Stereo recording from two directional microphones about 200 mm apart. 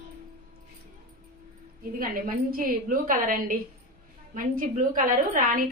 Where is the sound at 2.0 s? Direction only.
45° right (ahead or behind).